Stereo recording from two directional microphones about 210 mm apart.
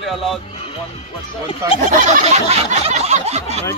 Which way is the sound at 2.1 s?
35° right (ahead or behind).